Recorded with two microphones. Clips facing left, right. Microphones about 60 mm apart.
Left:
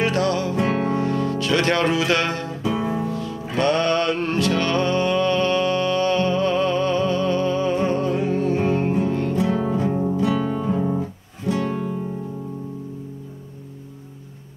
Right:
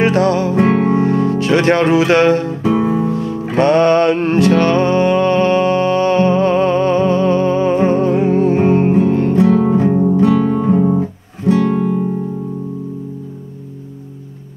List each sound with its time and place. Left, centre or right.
0.0 s music: right
11.0 s music: right